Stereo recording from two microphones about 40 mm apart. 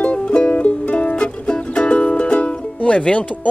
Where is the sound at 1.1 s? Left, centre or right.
Left.